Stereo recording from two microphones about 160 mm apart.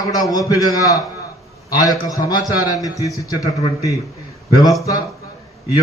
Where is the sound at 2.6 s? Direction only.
20° left (ahead or behind).